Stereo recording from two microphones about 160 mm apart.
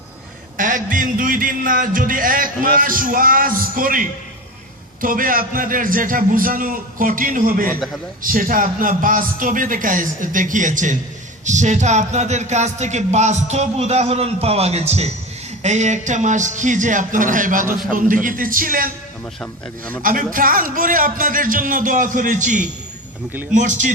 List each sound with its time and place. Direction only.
0.5 s music: 55° right (ahead or behind)
11.4 s a sound: 50° right (ahead or behind)
17.9 s music: 55° right (ahead or behind)
19.4 s speech: 10° left (ahead or behind)
20.0 s music: 60° right (ahead or behind)
23.3 s a man's voice: 10° right (ahead or behind)
23.6 s a sound: 50° right (ahead or behind)